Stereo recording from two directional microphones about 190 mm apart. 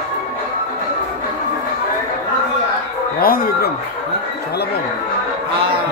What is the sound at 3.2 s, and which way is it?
Speech, 50° left (ahead or behind).